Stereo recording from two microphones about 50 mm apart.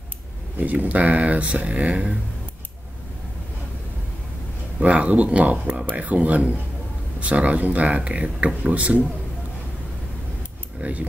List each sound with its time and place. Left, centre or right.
0.6 s speech: right
4.8 s speech: right
10.8 s speech: right